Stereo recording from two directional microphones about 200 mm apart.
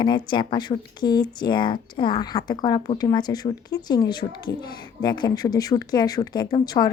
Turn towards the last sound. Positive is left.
turn(degrees=20)  # may be behind; listen again after turning